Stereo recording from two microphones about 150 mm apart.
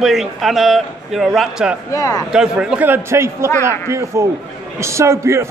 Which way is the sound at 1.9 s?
25° left (ahead or behind).